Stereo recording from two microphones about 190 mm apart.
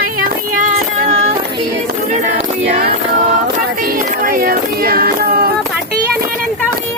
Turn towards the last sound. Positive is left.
turn(degrees=-55)  # may be behind; listen again after turning